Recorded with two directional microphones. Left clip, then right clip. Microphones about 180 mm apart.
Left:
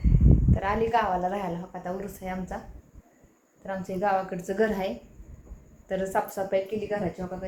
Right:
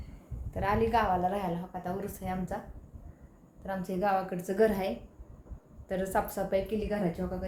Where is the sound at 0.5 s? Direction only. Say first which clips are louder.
Left 2 dB; centre (ahead or behind).